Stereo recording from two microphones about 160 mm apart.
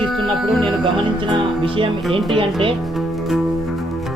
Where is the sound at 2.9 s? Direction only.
Centre (ahead or behind).